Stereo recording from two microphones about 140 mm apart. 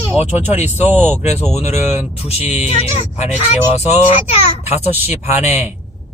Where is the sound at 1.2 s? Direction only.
50° left (ahead or behind).